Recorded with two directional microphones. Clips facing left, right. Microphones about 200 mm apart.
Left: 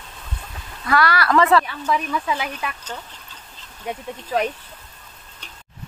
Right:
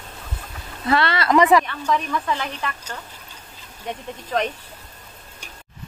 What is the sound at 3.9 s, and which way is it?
Speech, 10° left (ahead or behind).